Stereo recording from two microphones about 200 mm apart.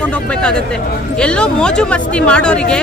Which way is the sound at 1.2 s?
5° left (ahead or behind).